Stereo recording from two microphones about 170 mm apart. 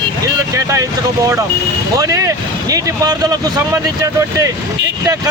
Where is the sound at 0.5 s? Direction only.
20° right (ahead or behind).